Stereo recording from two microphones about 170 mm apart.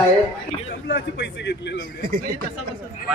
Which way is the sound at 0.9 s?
80° left.